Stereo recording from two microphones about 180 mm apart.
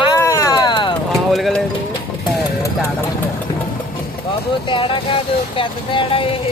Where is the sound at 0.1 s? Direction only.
15° left (ahead or behind).